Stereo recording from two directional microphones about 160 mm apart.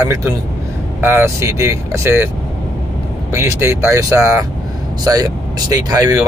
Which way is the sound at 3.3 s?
15° right (ahead or behind).